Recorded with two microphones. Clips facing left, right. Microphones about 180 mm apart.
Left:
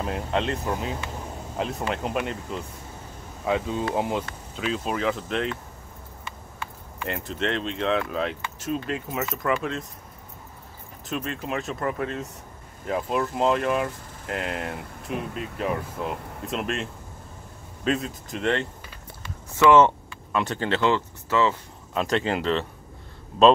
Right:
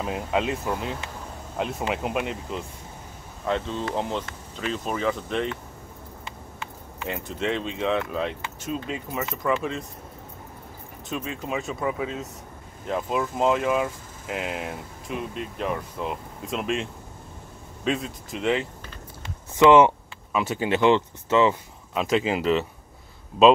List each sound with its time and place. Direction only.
0.0 s speech: 5° right (ahead or behind)
3.4 s speech: 10° left (ahead or behind)
6.2 s vehicle: 20° right (ahead or behind)
7.1 s speech: centre (ahead or behind)
11.1 s speech: centre (ahead or behind)
19.2 s a sound: 15° right (ahead or behind)
20.3 s speech: 10° right (ahead or behind)
21.9 s speech: 5° right (ahead or behind)